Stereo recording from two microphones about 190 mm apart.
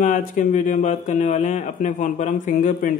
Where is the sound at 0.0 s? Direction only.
45° left (ahead or behind).